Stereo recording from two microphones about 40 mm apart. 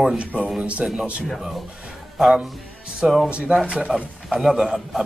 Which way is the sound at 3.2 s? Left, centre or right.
Right.